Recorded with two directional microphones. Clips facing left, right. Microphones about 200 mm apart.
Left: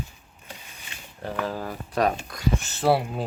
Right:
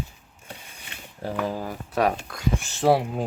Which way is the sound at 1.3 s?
10° right (ahead or behind).